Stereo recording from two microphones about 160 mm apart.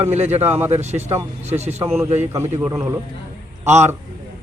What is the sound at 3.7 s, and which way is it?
Speech, 45° right (ahead or behind).